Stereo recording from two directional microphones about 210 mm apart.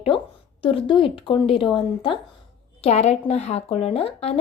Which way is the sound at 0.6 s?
25° left (ahead or behind).